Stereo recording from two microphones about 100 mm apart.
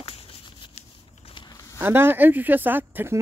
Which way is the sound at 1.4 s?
35° left (ahead or behind).